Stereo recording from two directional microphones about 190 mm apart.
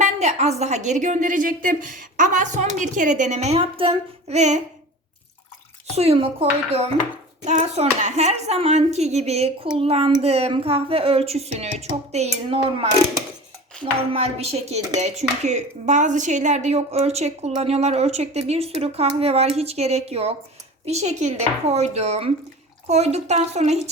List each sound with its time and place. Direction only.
0.0 s a woman's voice: 35° right (ahead or behind)
5.9 s a woman's voice: 35° right (ahead or behind)
14.1 s a woman's voice: 30° right (ahead or behind)